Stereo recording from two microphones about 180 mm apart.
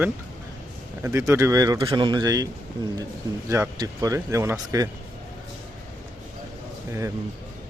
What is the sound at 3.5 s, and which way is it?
Speech, 15° right (ahead or behind).